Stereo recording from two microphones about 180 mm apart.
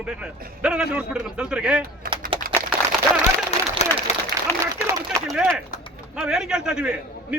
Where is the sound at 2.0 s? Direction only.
50° right (ahead or behind).